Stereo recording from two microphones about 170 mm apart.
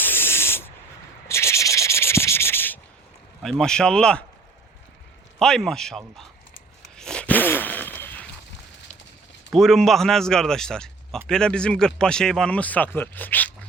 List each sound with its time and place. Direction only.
0.0 s spray: 15° left (ahead or behind)
1.3 s sanding: 15° left (ahead or behind)
3.4 s speech: 5° left (ahead or behind)
5.4 s speech: 5° left (ahead or behind)
6.9 s a sound: 5° left (ahead or behind)
9.5 s speech: centre (ahead or behind)